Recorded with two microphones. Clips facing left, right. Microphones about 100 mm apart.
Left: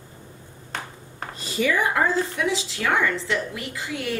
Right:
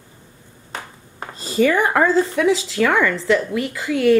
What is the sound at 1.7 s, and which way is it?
A woman's voice, 65° right (ahead or behind).